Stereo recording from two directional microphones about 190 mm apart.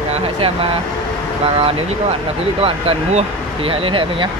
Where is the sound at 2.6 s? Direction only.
30° right (ahead or behind).